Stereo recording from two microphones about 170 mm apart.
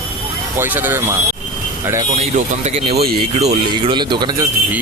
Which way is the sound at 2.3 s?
40° right (ahead or behind).